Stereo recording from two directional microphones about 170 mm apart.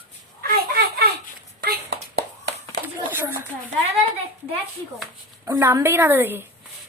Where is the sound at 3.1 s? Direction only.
15° right (ahead or behind).